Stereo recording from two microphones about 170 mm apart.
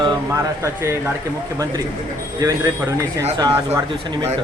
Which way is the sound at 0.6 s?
15° right (ahead or behind).